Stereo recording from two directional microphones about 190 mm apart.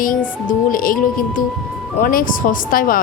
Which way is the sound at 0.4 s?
45° left (ahead or behind).